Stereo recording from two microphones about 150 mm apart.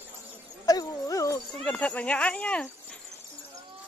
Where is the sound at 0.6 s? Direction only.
25° left (ahead or behind).